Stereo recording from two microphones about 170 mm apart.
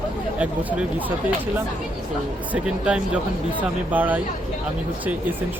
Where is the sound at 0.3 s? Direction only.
10° right (ahead or behind).